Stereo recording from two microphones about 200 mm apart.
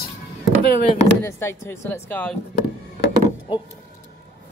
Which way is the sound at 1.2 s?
15° left (ahead or behind).